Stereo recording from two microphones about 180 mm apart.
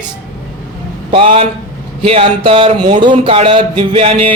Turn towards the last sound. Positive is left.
turn(degrees=-30)  # may be behind; listen again after turning